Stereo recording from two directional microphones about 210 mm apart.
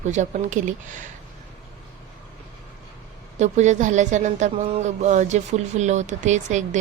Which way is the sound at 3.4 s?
35° right (ahead or behind).